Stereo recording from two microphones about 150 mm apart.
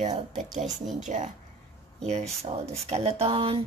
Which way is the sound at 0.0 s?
50° right (ahead or behind).